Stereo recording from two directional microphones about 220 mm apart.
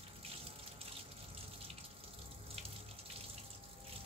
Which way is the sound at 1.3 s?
25° right (ahead or behind).